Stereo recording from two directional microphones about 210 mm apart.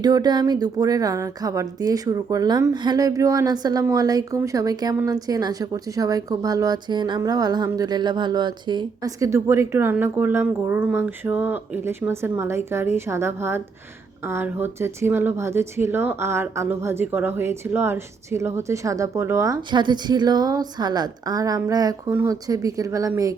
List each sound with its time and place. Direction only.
0.0 s a woman's voice: 20° right (ahead or behind)